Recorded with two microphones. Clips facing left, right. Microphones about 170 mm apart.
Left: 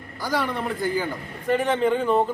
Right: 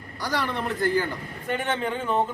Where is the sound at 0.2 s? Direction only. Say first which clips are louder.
Left 2 dB; centre (ahead or behind).